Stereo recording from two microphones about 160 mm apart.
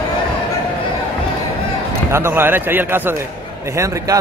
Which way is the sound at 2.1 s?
15° right (ahead or behind).